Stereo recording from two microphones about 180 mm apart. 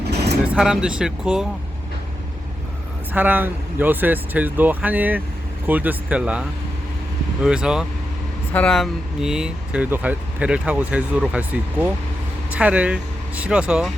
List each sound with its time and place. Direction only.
0.0 s vehicle: 65° right (ahead or behind)
0.4 s speech: 5° right (ahead or behind)
3.1 s speech: 10° right (ahead or behind)
7.4 s speech: 5° right (ahead or behind)